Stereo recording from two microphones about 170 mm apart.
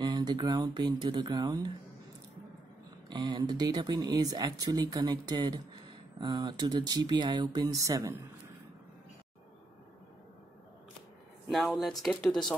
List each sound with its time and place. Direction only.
0.0 s speech: 25° right (ahead or behind)
3.1 s speech: 25° right (ahead or behind)
11.4 s speech: centre (ahead or behind)